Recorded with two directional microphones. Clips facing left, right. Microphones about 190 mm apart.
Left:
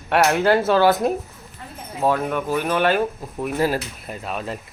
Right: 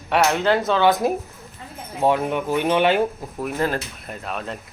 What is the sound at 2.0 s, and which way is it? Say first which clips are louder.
Speech: right 1 dB; 20° right (ahead or behind).